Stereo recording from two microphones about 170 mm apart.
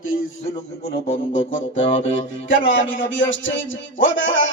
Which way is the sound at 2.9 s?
90° left.